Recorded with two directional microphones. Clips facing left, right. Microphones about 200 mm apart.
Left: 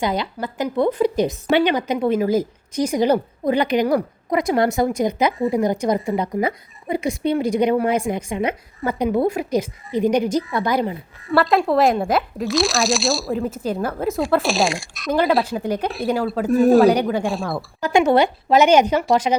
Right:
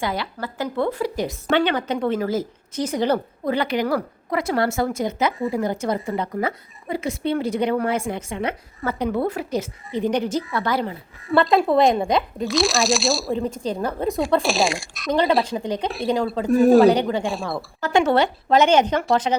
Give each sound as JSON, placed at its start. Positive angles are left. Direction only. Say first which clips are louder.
{"t": 0.0, "sound": "a woman's voice", "louder": "left 4 dB", "side_deg": 20}
{"t": 11.2, "sound": "speech", "louder": "even", "side_deg": 0}
{"t": 16.9, "sound": "a woman's voice", "louder": "left 1 dB", "side_deg": 10}
{"t": 17.2, "sound": "speech", "louder": "left 2 dB", "side_deg": 0}
{"t": 17.7, "sound": "a woman's voice", "louder": "left 3 dB", "side_deg": 15}